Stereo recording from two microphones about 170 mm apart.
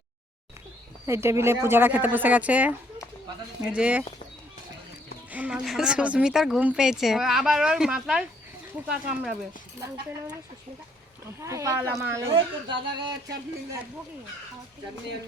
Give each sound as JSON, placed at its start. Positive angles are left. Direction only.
{"t": 1.0, "sound": "speech", "side_deg": -15}
{"t": 5.3, "sound": "speech", "side_deg": -10}
{"t": 11.3, "sound": "speech", "side_deg": -15}
{"t": 12.3, "sound": "speech", "side_deg": -25}